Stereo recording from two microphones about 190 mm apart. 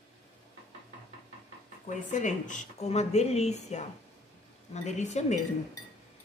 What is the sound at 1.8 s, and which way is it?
Speech, 40° left (ahead or behind).